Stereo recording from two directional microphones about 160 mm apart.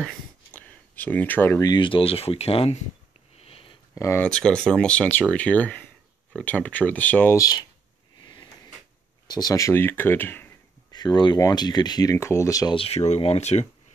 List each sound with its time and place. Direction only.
0.0 s a sound: 10° left (ahead or behind)
1.7 s speech: 30° left (ahead or behind)
3.3 s sniff: 35° left (ahead or behind)
3.9 s speech: 20° left (ahead or behind)
4.2 s speech: 5° left (ahead or behind); by 7.6 s 20° left (ahead or behind)
8.2 s drawer open or close: 25° left (ahead or behind)
9.3 s speech: 25° left (ahead or behind)
10.9 s speech: 25° left (ahead or behind)
12.7 s speech: 40° left (ahead or behind)